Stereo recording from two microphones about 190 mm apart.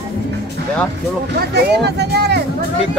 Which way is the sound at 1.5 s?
60° right (ahead or behind).